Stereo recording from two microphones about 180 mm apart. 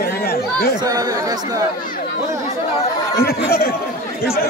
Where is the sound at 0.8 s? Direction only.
20° right (ahead or behind).